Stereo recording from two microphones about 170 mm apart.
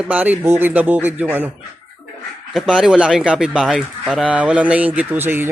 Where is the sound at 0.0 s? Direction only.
10° right (ahead or behind).